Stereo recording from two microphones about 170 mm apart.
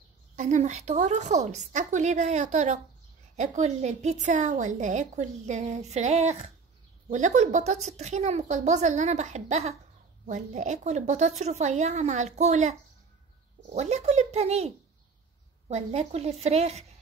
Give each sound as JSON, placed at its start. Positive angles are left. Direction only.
{"t": 0.4, "sound": "a woman's voice", "side_deg": -45}
{"t": 13.7, "sound": "a woman's voice", "side_deg": -40}
{"t": 15.7, "sound": "a woman's voice", "side_deg": -40}